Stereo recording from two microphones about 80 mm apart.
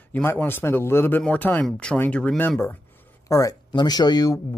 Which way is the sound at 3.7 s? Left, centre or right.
Left.